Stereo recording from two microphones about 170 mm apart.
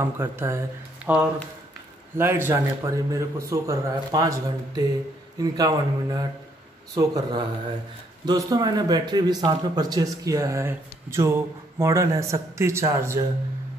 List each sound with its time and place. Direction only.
0.0 s speech: 15° right (ahead or behind)